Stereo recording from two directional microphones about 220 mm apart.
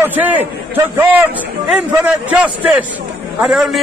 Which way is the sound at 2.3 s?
5° right (ahead or behind).